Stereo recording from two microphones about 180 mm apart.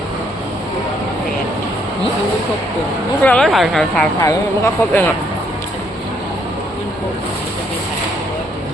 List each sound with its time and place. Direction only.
3.2 s a woman's voice: 5° left (ahead or behind)
4.2 s speech: 15° left (ahead or behind)